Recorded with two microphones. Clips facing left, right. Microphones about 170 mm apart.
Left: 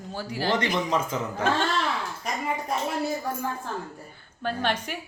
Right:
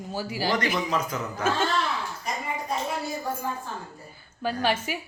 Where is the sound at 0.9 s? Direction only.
25° left (ahead or behind).